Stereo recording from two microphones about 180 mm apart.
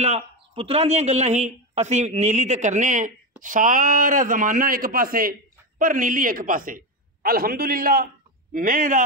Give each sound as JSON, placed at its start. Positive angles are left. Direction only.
{"t": 0.0, "sound": "a man's voice", "side_deg": -35}